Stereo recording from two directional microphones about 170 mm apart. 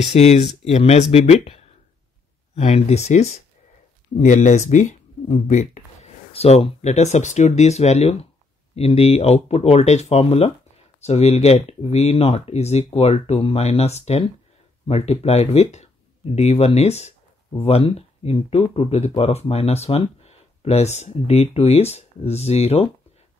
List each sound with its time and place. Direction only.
0.0 s speech: 40° left (ahead or behind)